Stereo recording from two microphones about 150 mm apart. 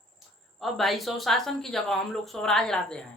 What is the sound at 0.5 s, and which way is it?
A woman's voice, centre (ahead or behind).